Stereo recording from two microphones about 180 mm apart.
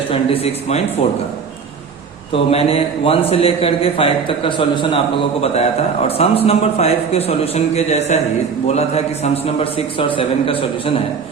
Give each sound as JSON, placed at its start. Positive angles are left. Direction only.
{"t": 0.1, "sound": "a man's voice", "side_deg": 35}
{"t": 2.3, "sound": "a man's voice", "side_deg": 30}